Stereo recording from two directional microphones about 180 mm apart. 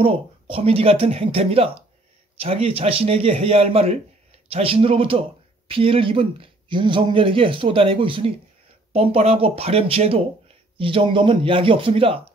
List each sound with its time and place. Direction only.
0.0 s a man's voice: 30° right (ahead or behind)